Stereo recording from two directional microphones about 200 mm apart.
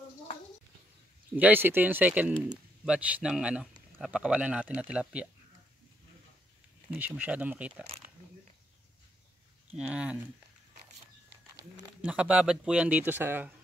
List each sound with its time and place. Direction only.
1.3 s a man's voice: 10° right (ahead or behind)
6.9 s speech: 10° right (ahead or behind)
9.7 s a man's voice: 5° right (ahead or behind)
12.0 s speech: 5° right (ahead or behind)